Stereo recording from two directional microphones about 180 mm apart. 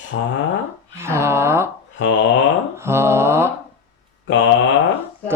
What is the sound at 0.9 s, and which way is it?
Speech, 15° right (ahead or behind).